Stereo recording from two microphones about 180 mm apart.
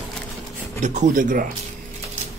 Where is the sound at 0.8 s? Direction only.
45° right (ahead or behind).